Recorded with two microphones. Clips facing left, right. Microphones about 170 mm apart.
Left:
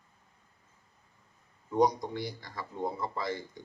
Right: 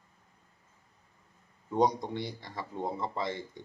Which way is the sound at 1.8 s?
25° right (ahead or behind).